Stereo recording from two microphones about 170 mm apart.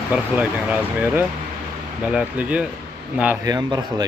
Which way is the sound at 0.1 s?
10° right (ahead or behind).